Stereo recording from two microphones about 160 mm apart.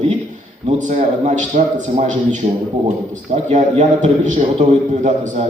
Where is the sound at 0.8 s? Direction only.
50° right (ahead or behind).